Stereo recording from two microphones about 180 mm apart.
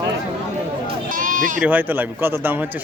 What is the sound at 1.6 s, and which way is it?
Speech, 10° right (ahead or behind).